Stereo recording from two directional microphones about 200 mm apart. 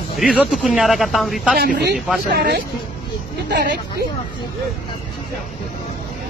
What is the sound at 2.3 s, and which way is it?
Speech, 50° right (ahead or behind).